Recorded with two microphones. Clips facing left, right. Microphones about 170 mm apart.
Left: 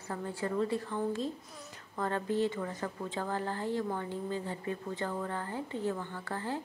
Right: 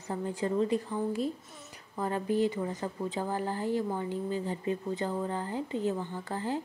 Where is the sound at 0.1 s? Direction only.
20° right (ahead or behind).